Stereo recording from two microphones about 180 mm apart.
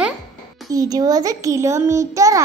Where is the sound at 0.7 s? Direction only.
20° right (ahead or behind).